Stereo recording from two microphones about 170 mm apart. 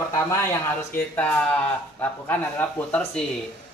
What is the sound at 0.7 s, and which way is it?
Speech, 10° left (ahead or behind).